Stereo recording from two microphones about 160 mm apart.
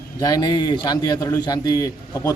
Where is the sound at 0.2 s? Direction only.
25° left (ahead or behind).